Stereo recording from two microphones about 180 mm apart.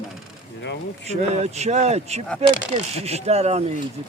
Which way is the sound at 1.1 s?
40° right (ahead or behind).